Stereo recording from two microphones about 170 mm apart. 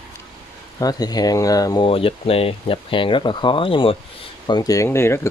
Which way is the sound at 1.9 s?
35° left (ahead or behind).